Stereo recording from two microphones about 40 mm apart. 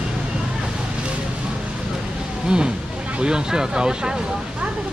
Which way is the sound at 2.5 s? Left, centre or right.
Right.